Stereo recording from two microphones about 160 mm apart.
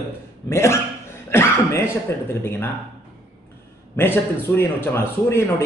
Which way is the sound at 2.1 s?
15° left (ahead or behind).